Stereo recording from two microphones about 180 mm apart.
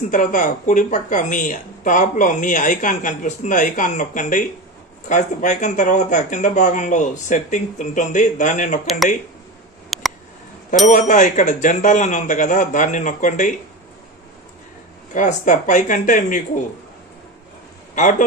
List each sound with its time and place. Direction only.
0.1 s speech: 45° left (ahead or behind)
9.9 s a sound: centre (ahead or behind)
10.9 s speech: 45° left (ahead or behind)
15.1 s speech: 45° left (ahead or behind)